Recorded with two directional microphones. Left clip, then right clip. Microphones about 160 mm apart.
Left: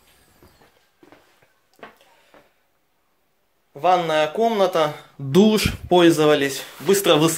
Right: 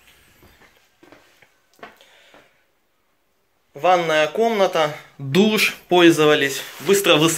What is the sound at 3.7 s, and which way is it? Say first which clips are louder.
Speech: right 1 dB; 10° left (ahead or behind).